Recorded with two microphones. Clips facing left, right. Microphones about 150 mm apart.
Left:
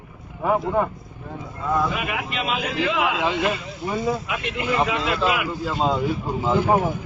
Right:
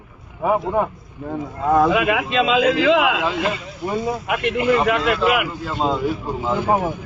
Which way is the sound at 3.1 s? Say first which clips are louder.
Right 1 dB; centre (ahead or behind).